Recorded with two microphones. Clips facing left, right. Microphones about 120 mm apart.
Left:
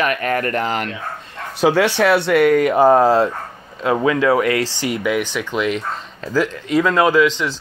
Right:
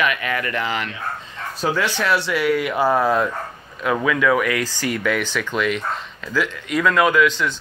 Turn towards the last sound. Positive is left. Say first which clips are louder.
# left 2 dB
turn(degrees=25)  # may be behind; listen again after turning